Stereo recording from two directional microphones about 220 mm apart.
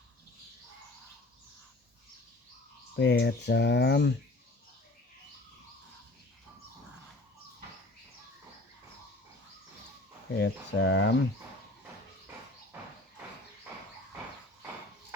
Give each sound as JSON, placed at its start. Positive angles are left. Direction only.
{"t": 2.9, "sound": "speech", "side_deg": 50}
{"t": 10.3, "sound": "speech", "side_deg": 50}